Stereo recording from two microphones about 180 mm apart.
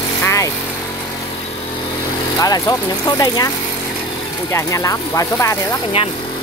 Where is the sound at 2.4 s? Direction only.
20° left (ahead or behind).